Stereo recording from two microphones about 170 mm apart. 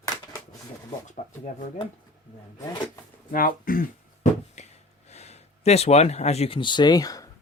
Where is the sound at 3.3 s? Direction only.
55° left (ahead or behind); by 7.2 s 20° left (ahead or behind).